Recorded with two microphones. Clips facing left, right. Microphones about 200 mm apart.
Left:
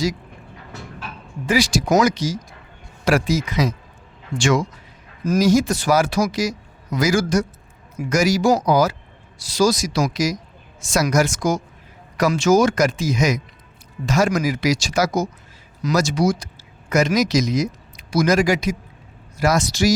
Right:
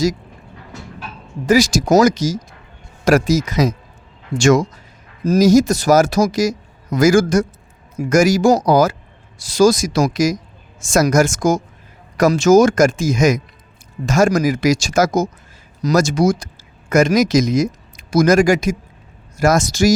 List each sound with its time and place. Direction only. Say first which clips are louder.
1.5 s speech: right 5 dB; 45° right (ahead or behind)